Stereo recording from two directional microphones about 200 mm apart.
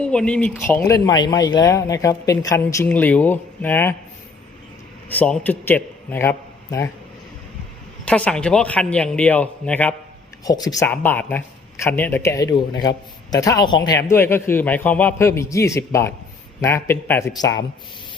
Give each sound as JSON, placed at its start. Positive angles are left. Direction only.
{"t": 0.0, "sound": "a man's voice", "side_deg": 5}
{"t": 5.0, "sound": "a man's voice", "side_deg": 10}
{"t": 8.0, "sound": "a man's voice", "side_deg": 5}
{"t": 10.4, "sound": "a man's voice", "side_deg": 20}